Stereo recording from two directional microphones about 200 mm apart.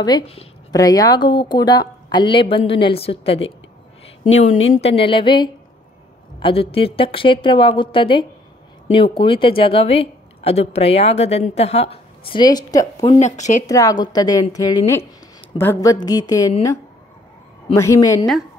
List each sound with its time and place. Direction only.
0.0 s a woman's voice: 25° left (ahead or behind)
4.8 s a woman's voice: 25° left (ahead or behind)
13.2 s speech: 35° left (ahead or behind)
13.7 s a woman's voice: 15° left (ahead or behind)
17.7 s a woman's voice: 15° left (ahead or behind)